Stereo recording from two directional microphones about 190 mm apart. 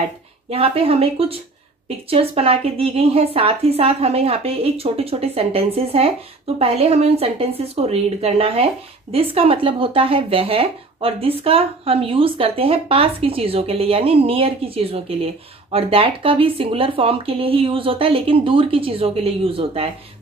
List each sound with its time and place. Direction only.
0.5 s a woman's voice: 30° right (ahead or behind)